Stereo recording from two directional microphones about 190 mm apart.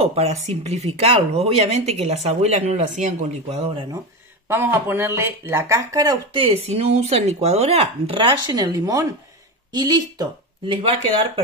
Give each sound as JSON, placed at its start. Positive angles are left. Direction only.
{"t": 0.0, "sound": "speech", "side_deg": -35}
{"t": 4.5, "sound": "speech", "side_deg": -10}